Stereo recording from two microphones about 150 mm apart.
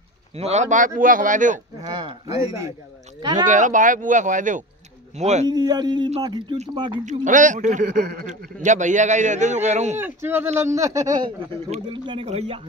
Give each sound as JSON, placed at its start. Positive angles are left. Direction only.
{"t": 0.4, "sound": "speech", "side_deg": -50}
{"t": 1.8, "sound": "speech", "side_deg": -30}
{"t": 3.4, "sound": "a man's voice", "side_deg": -55}
{"t": 5.5, "sound": "speech", "side_deg": -25}
{"t": 7.1, "sound": "speech", "side_deg": -55}
{"t": 8.6, "sound": "a man's voice", "side_deg": -55}
{"t": 9.9, "sound": "speech", "side_deg": -15}
{"t": 11.7, "sound": "a man's voice", "side_deg": -35}